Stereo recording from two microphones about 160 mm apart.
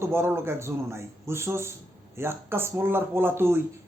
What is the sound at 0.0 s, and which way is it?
A man's voice, 15° right (ahead or behind).